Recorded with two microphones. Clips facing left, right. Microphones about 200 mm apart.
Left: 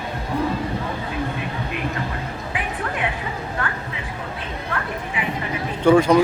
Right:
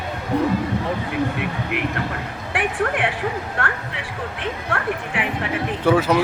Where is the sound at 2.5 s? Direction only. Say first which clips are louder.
Right 7 dB; 80° right.